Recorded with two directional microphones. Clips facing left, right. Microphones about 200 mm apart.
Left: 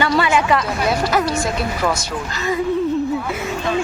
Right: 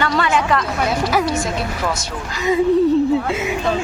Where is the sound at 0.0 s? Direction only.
5° left (ahead or behind).